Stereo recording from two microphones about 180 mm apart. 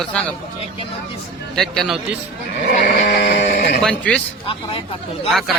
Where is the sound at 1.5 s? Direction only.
Centre (ahead or behind).